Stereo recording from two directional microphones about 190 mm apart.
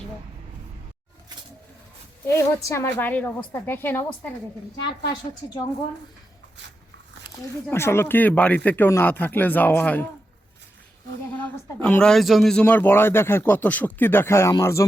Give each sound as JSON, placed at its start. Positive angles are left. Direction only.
{"t": 2.2, "sound": "speech", "side_deg": 15}
{"t": 5.4, "sound": "a woman's voice", "side_deg": 20}
{"t": 7.7, "sound": "speech", "side_deg": 15}
{"t": 11.3, "sound": "speech", "side_deg": 5}